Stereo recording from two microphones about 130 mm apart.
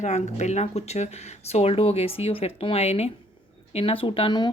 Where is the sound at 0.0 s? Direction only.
65° left (ahead or behind).